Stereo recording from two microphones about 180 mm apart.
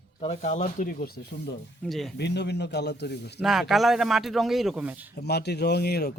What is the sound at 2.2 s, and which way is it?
A man's voice, 70° left (ahead or behind).